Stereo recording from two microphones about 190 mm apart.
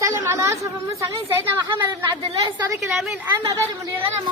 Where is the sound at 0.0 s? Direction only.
15° right (ahead or behind).